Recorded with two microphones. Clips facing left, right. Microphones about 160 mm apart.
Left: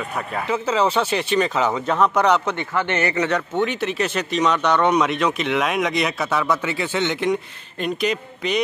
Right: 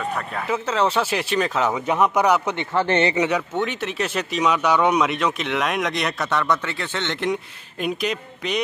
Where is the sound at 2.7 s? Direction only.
30° right (ahead or behind).